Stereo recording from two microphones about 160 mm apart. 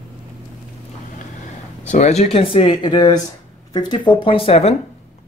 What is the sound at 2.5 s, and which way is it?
Speech, 30° left (ahead or behind).